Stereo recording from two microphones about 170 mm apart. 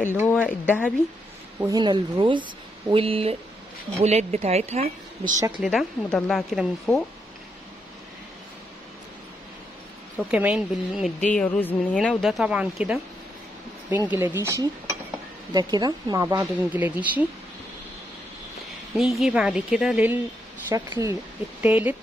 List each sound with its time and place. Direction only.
0.5 s speech: 5° left (ahead or behind)
1.6 s speech: 25° right (ahead or behind); by 5.3 s 40° right (ahead or behind)
5.6 s speech: centre (ahead or behind)
10.1 s speech: 10° right (ahead or behind)
11.3 s speech: 10° left (ahead or behind)
14.0 s cutlery: 10° right (ahead or behind)
15.5 s speech: 25° right (ahead or behind)
16.3 s cutlery: 10° right (ahead or behind)
18.9 s speech: centre (ahead or behind)
20.6 s cutlery: 15° right (ahead or behind)